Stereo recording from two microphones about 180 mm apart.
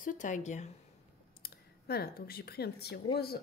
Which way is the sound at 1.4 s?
60° left (ahead or behind).